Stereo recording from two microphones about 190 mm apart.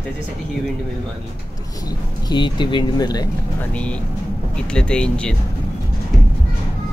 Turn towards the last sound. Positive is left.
turn(degrees=5)  # may be behind; listen again after turning